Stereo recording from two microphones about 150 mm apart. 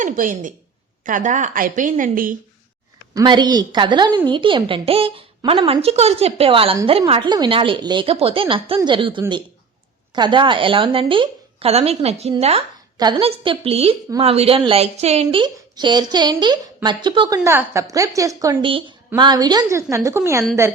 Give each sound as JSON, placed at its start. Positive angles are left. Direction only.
{"t": 0.0, "sound": "a woman's voice", "side_deg": -65}
{"t": 3.2, "sound": "a woman's voice", "side_deg": -30}
{"t": 13.0, "sound": "a woman's voice", "side_deg": -35}
{"t": 18.6, "sound": "a woman's voice", "side_deg": -35}